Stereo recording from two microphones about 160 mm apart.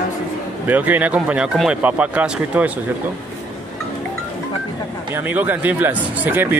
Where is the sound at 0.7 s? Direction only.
10° right (ahead or behind).